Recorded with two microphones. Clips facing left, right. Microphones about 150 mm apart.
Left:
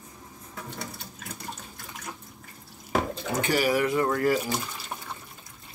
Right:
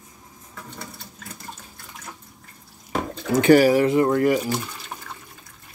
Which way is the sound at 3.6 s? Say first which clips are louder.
Right 7 dB; 30° right (ahead or behind).